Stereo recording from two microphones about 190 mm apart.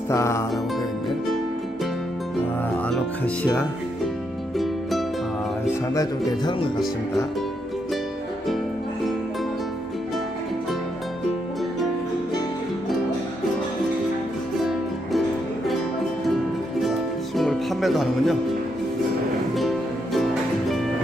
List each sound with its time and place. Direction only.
0.1 s music: 15° left (ahead or behind)
5.9 s speech: 25° left (ahead or behind)
15.1 s music: centre (ahead or behind)
16.8 s music: centre (ahead or behind)
20.2 s music: centre (ahead or behind)